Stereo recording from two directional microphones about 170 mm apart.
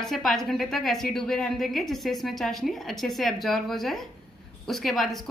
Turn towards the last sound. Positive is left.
turn(degrees=0)  # may be behind; listen again after turning